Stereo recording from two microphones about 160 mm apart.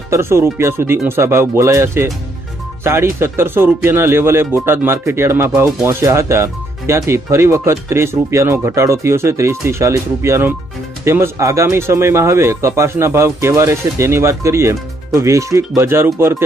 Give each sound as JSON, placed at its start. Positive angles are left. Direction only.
{"t": 0.1, "sound": "speech", "side_deg": -15}